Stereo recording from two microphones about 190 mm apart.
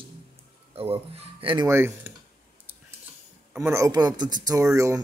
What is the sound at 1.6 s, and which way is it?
Speech, 10° right (ahead or behind).